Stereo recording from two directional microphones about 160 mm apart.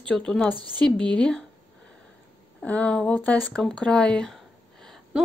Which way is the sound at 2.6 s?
10° left (ahead or behind).